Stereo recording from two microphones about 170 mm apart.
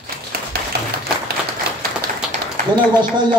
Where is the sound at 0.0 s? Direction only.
65° right (ahead or behind).